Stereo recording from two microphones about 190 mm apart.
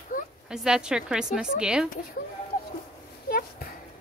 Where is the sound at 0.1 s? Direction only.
45° left (ahead or behind).